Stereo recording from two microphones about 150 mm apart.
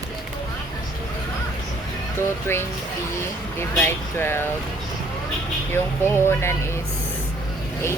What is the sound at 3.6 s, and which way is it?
Speech, 15° left (ahead or behind).